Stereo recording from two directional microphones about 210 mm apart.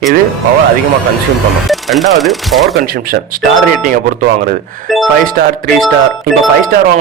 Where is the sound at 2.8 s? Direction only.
45° right (ahead or behind).